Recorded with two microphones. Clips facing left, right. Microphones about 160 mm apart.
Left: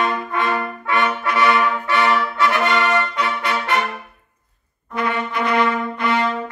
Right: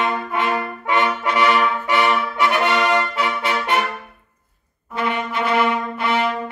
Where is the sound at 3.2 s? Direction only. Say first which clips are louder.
Even; 25° right (ahead or behind).